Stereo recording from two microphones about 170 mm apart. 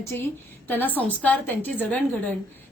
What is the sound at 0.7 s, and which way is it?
A woman's voice, 10° left (ahead or behind).